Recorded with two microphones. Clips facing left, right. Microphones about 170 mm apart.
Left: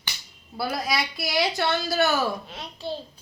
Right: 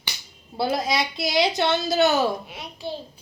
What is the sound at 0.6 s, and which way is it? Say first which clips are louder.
A woman's voice: right 4 dB; 25° right (ahead or behind).